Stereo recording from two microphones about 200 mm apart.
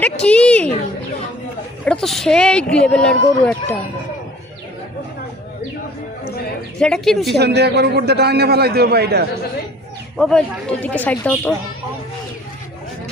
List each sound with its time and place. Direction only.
0.0 s speech: 5° left (ahead or behind)
1.8 s speech: 5° left (ahead or behind)
6.7 s speech: 5° left (ahead or behind)
7.3 s a man's voice: 55° right (ahead or behind)
10.2 s speech: 5° left (ahead or behind)